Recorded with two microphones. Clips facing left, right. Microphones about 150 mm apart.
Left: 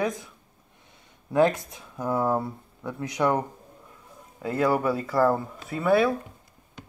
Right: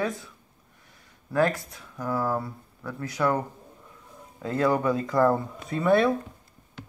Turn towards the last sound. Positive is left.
turn(degrees=5)  # may be behind; listen again after turning